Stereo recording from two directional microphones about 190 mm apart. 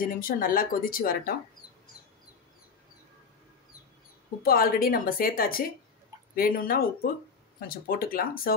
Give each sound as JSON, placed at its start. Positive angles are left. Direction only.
{"t": 0.2, "sound": "speech", "side_deg": 50}
{"t": 4.4, "sound": "speech", "side_deg": 50}